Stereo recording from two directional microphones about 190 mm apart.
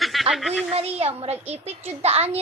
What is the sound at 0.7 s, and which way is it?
A woman's voice, 35° right (ahead or behind).